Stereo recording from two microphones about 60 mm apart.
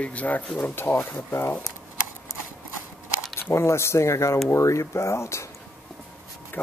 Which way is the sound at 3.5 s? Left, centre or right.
Left.